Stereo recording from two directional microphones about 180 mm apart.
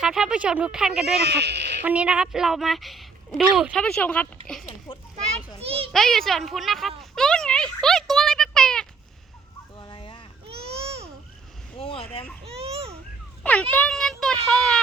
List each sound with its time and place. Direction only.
0.0 s a woman's voice: 5° right (ahead or behind)
1.2 s speech: 70° right (ahead or behind)
1.8 s a woman's voice: 5° right (ahead or behind)
4.5 s a sound: 5° left (ahead or behind)
4.9 s children playing: 30° left (ahead or behind)
5.9 s a woman's voice: centre (ahead or behind)
7.0 s a sound: 5° left (ahead or behind)
9.7 s fowl: 25° left (ahead or behind)
10.4 s baby cry: 35° right (ahead or behind)
11.8 s a sound: 30° left (ahead or behind)
12.5 s a sound: 35° right (ahead or behind)
13.4 s a woman's voice: 10° left (ahead or behind)